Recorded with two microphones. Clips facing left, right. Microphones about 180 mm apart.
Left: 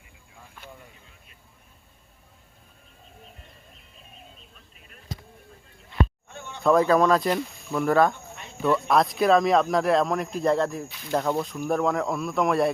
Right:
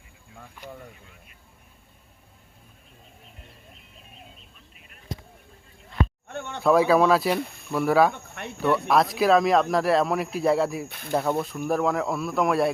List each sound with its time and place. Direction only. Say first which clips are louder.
6.2 s a sound: right 7 dB; 60° right (ahead or behind)
6.6 s speech: even; 5° right (ahead or behind)
8.1 s cricket: right 5 dB; 65° right (ahead or behind)
8.9 s speech: even; centre (ahead or behind)
10.8 s speech: right 1 dB; 55° right (ahead or behind)
11.1 s speech: even; 5° right (ahead or behind)